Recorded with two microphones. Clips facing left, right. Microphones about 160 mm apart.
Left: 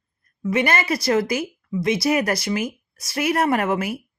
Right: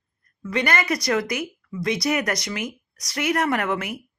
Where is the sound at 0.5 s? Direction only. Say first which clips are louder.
Left 2 dB; 25° left (ahead or behind).